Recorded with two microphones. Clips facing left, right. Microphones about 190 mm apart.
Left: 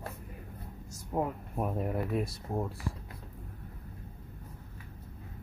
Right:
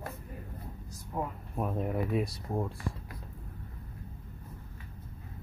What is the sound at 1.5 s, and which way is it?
Speech, 10° left (ahead or behind).